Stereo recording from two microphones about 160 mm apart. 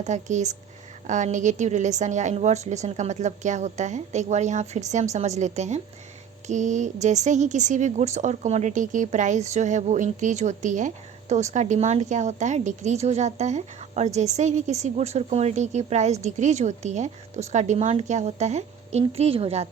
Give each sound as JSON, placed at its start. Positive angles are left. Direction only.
{"t": 0.0, "sound": "speech", "side_deg": -50}